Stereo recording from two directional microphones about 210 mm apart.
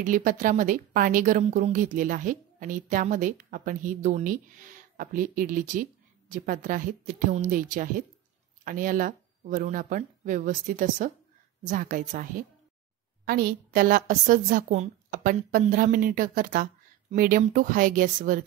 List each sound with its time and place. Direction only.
0.0 s a woman's voice: 40° right (ahead or behind)